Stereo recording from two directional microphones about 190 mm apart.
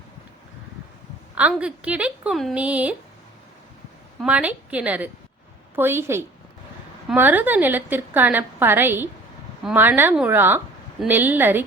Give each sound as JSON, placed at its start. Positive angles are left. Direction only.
{"t": 1.4, "sound": "a woman's voice", "side_deg": -5}
{"t": 4.2, "sound": "a woman's voice", "side_deg": -5}